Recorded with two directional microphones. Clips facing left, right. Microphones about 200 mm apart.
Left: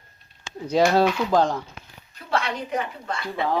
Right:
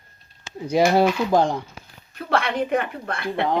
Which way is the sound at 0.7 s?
10° right (ahead or behind).